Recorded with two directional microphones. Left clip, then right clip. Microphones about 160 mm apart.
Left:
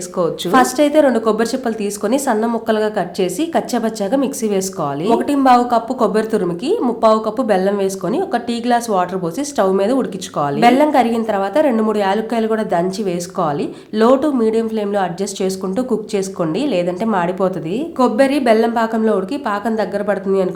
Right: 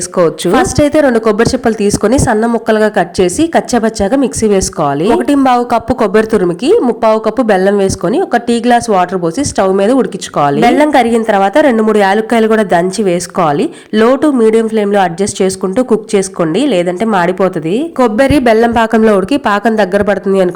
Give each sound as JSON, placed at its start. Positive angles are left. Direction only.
{"t": 0.2, "sound": "speech", "side_deg": -30}
{"t": 18.0, "sound": "a woman's voice", "side_deg": -45}